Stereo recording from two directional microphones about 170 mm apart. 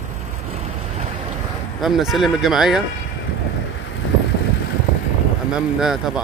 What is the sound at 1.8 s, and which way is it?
Speech, centre (ahead or behind).